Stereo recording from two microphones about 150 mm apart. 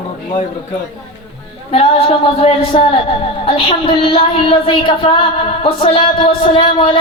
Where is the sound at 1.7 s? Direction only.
40° left (ahead or behind).